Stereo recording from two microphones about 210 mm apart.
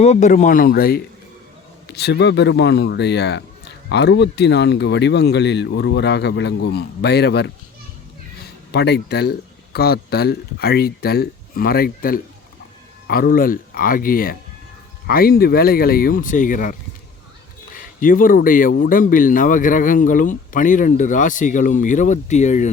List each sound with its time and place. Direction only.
0.0 s speech: 35° left (ahead or behind); by 7.5 s 55° left (ahead or behind)
8.7 s speech: 50° left (ahead or behind); by 22.7 s 35° left (ahead or behind)